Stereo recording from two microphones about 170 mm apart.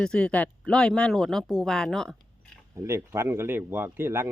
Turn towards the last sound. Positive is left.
turn(degrees=-15)  # may be behind; listen again after turning